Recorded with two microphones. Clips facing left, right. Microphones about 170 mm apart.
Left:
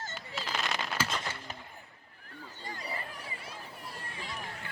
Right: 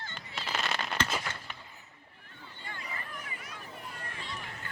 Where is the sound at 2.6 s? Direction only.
35° left (ahead or behind).